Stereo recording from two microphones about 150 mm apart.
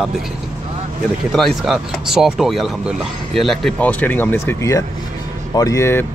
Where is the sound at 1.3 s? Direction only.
Centre (ahead or behind).